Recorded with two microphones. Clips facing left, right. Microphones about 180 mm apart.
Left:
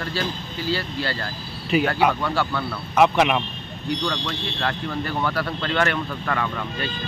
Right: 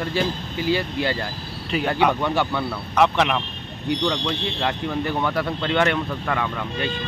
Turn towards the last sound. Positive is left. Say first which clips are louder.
# right 2 dB
turn(degrees=-15)  # may be behind; listen again after turning